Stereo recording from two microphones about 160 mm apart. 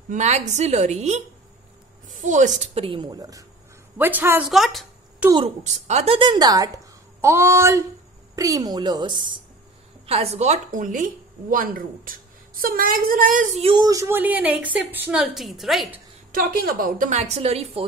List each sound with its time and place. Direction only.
0.1 s a woman's voice: 45° right (ahead or behind); by 4.5 s 10° right (ahead or behind)
4.5 s speech: centre (ahead or behind)
5.6 s a woman's voice: 45° right (ahead or behind)
10.0 s a woman's voice: 40° right (ahead or behind); by 13.5 s 55° right (ahead or behind)
13.6 s a woman's voice: 35° right (ahead or behind)
13.8 s a woman's voice: 15° right (ahead or behind); by 16.0 s centre (ahead or behind)
16.3 s a woman's voice: 65° right (ahead or behind)
17.1 s a woman's voice: 45° right (ahead or behind)